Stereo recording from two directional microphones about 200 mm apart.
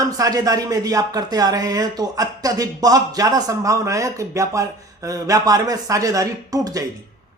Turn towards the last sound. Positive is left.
turn(degrees=-15)  # may be behind; listen again after turning